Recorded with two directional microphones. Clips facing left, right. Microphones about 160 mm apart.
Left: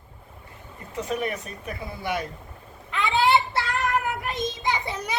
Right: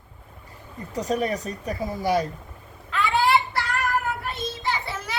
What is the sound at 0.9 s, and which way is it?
Speech, 40° right (ahead or behind).